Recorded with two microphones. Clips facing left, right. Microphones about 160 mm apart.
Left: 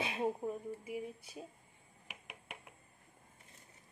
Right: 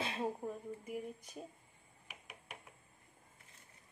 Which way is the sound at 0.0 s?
20° left (ahead or behind).